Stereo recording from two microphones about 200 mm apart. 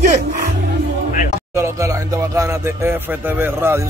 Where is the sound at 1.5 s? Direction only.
15° right (ahead or behind).